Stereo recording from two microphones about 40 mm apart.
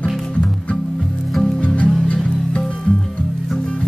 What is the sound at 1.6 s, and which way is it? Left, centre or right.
Music, left.